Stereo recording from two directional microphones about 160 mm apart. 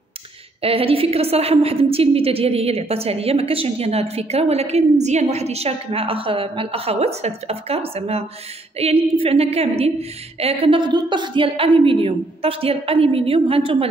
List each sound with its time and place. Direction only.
0.6 s a woman's voice: 35° right (ahead or behind)